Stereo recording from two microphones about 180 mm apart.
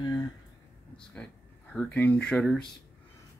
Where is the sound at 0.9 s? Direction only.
5° left (ahead or behind).